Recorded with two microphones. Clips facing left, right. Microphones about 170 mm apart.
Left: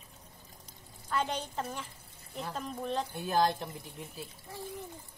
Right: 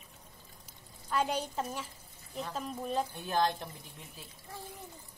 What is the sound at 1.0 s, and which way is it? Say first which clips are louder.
A woman's voice: right 1 dB; 10° right (ahead or behind).